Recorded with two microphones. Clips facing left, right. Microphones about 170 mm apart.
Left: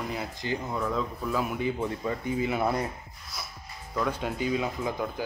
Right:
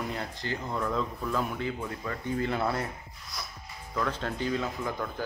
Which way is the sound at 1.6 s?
20° left (ahead or behind).